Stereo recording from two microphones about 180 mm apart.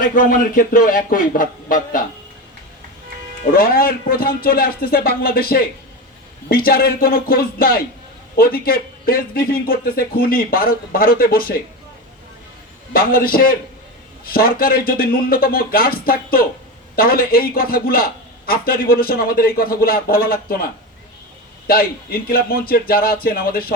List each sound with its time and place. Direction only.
0.0 s a man's voice: 50° left (ahead or behind)
3.4 s a man's voice: 55° left (ahead or behind)
12.9 s a man's voice: 55° left (ahead or behind)
21.7 s a man's voice: 55° left (ahead or behind)